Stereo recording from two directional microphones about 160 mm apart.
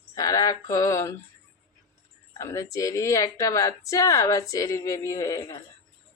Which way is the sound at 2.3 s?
20° left (ahead or behind).